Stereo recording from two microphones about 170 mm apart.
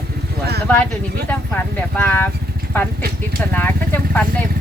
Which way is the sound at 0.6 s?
10° left (ahead or behind).